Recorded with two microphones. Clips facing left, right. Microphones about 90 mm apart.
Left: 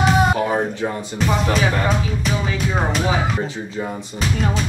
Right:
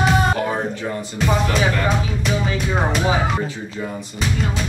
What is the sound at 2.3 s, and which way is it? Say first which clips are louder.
Speech: right 2 dB; centre (ahead or behind).